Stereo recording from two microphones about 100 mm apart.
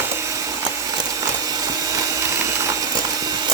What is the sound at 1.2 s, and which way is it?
Vacuum cleaner, 40° right (ahead or behind).